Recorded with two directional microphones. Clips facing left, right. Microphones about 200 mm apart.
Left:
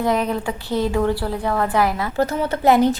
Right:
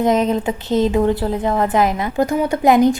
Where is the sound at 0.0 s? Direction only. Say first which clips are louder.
Right 4 dB; 20° right (ahead or behind).